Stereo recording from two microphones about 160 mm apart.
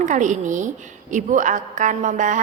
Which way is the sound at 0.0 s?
50° right (ahead or behind).